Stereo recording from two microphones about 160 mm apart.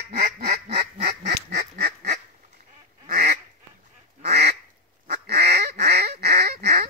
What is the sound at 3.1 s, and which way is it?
Goose, 70° right (ahead or behind).